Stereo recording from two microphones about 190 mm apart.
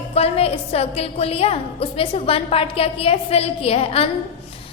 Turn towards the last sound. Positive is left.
turn(degrees=30)  # may be behind; listen again after turning